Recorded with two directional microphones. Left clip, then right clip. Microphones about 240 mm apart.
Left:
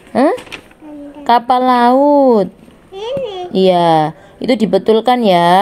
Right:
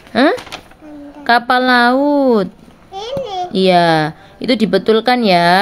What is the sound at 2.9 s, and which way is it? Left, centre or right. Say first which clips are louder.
Babbling: left 1 dB; right.